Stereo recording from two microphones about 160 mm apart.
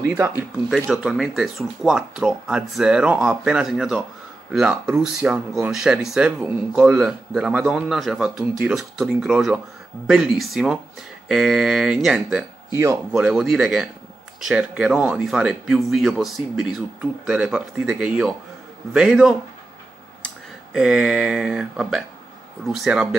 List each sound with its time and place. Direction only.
0.0 s speech: 15° right (ahead or behind)
0.4 s speech: centre (ahead or behind)
12.7 s speech: 15° right (ahead or behind)
13.3 s speech: centre (ahead or behind)
20.7 s speech: centre (ahead or behind)